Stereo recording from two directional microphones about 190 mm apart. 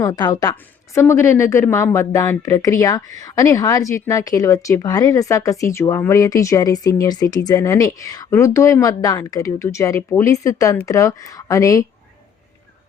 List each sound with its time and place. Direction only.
0.0 s a woman's voice: 20° left (ahead or behind)